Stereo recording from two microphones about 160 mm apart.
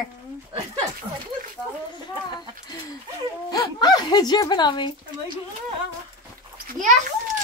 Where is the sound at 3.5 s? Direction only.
25° left (ahead or behind).